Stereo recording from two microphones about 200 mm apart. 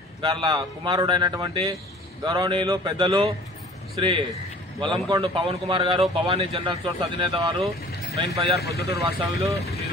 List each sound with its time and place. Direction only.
0.2 s a man's voice: 25° right (ahead or behind)
8.5 s speech: 55° left (ahead or behind)
9.0 s speech: 15° right (ahead or behind)